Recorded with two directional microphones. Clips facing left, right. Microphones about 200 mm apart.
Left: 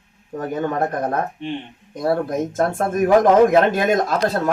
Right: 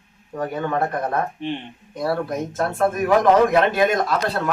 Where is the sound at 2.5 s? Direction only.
45° left (ahead or behind).